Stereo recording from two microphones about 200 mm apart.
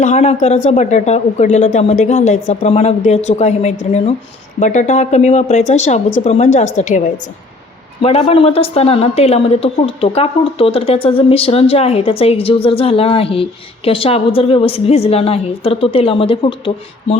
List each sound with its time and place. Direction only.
0.0 s speech: 35° left (ahead or behind)
8.0 s speech: 30° left (ahead or behind)